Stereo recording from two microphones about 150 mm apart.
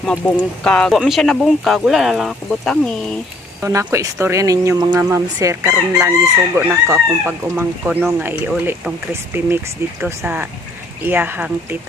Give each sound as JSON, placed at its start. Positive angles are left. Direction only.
{"t": 0.1, "sound": "speech", "side_deg": 10}
{"t": 3.6, "sound": "speech", "side_deg": -20}
{"t": 5.1, "sound": "chicken", "side_deg": -20}